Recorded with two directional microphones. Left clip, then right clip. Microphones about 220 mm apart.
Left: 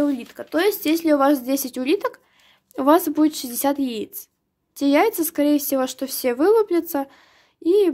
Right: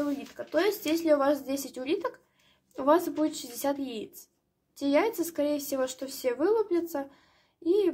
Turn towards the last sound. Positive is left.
turn(degrees=45)  # may be behind; listen again after turning